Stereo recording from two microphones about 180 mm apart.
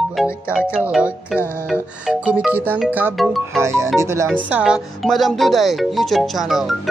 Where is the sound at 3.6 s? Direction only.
15° right (ahead or behind).